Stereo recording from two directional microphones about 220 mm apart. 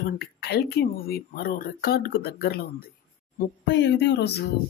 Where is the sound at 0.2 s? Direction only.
45° left (ahead or behind).